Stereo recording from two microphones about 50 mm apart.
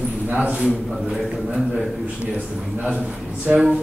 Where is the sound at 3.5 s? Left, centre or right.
Centre.